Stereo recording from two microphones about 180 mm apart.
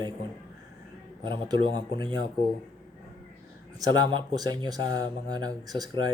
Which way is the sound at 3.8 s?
25° right (ahead or behind).